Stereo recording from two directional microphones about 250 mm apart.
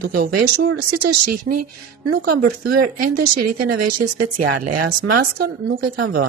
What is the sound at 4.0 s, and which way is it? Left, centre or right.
Speech, right.